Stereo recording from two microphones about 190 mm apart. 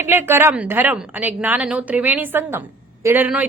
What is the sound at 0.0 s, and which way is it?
A woman's voice, 10° right (ahead or behind).